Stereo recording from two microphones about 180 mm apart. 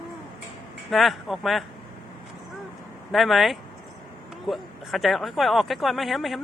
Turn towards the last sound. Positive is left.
turn(degrees=0)  # may be behind; listen again after turning